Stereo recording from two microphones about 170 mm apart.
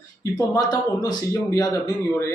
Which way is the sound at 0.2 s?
20° left (ahead or behind).